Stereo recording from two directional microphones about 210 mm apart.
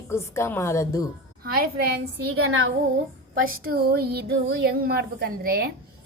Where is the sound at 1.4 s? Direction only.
45° right (ahead or behind).